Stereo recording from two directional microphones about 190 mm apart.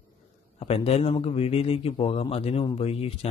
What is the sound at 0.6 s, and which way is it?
A man's voice, 30° left (ahead or behind).